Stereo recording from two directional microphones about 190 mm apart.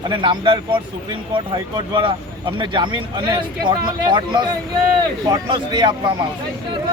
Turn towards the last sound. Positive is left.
turn(degrees=-25)  # may be behind; listen again after turning